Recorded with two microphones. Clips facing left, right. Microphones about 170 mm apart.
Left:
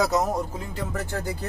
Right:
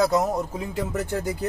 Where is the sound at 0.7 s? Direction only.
20° right (ahead or behind).